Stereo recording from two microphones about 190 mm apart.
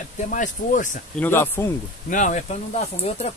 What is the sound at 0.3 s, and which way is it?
Speech, 45° left (ahead or behind).